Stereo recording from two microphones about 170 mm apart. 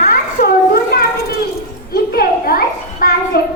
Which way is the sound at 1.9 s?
60° left (ahead or behind).